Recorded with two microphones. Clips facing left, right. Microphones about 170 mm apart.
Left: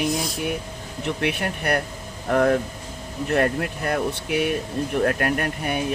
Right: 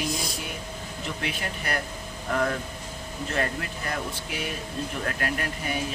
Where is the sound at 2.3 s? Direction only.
50° left (ahead or behind).